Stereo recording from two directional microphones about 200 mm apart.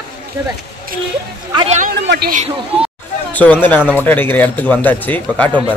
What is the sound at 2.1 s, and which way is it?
Speech, 50° right (ahead or behind).